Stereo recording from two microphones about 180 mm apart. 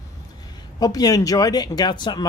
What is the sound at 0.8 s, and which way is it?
Speech, 20° left (ahead or behind).